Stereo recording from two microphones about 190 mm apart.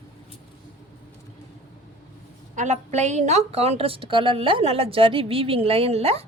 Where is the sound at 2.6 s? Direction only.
40° right (ahead or behind).